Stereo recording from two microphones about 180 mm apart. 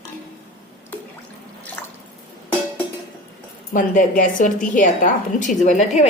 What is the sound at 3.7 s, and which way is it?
A woman's voice, 45° left (ahead or behind).